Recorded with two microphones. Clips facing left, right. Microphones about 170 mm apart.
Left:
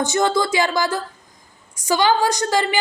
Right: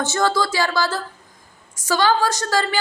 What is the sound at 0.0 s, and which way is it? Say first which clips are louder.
A woman's voice: left 2 dB; 15° left (ahead or behind).